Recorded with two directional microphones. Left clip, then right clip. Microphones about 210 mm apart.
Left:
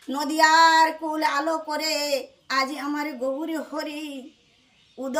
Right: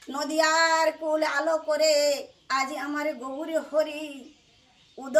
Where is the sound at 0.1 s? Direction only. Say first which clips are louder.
Left 5 dB; 15° right (ahead or behind).